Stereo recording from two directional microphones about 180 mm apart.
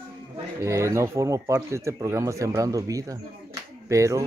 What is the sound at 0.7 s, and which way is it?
Speech, 15° right (ahead or behind).